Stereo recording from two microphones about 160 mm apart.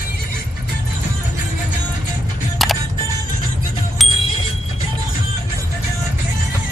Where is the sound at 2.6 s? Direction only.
Centre (ahead or behind).